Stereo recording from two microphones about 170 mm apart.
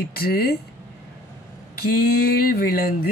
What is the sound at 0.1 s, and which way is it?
Speech, 65° left (ahead or behind).